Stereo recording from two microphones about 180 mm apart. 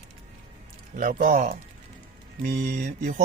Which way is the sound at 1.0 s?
45° right (ahead or behind).